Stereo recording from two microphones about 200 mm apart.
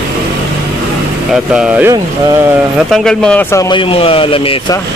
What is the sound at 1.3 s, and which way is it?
Speech, 5° right (ahead or behind).